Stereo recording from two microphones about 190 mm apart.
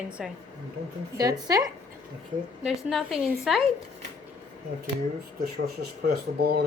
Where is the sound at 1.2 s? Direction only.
20° right (ahead or behind).